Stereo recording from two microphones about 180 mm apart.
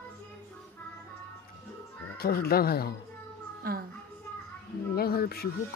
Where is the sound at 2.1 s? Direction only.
55° left (ahead or behind).